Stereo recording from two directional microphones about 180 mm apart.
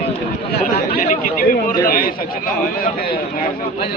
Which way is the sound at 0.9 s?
55° left (ahead or behind).